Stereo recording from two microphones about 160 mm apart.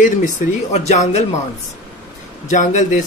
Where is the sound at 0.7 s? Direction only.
45° left (ahead or behind).